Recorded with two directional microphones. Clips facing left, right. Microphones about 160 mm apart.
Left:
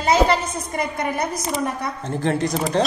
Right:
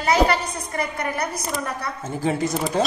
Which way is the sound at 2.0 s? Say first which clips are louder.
Left 1 dB; 5° right (ahead or behind).